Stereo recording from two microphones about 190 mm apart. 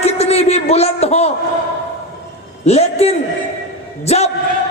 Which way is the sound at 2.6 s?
35° left (ahead or behind).